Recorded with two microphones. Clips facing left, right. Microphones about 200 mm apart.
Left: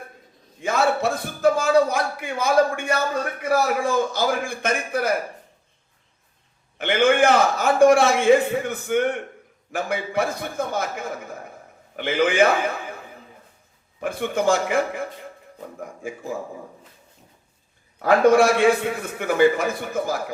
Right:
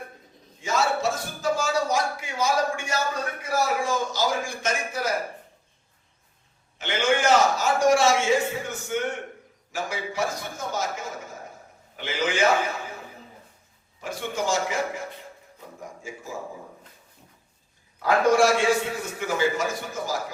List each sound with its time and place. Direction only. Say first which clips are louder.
0.6 s a man's voice: left 4 dB; 55° left (ahead or behind)
6.7 s a man's voice: left 6 dB; 55° left (ahead or behind)
14.0 s a man's voice: left 7 dB; 55° left (ahead or behind)
18.0 s a man's voice: left 4 dB; 55° left (ahead or behind)